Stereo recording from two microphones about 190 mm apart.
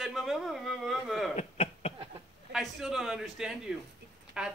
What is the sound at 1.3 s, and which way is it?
Cough, 35° left (ahead or behind).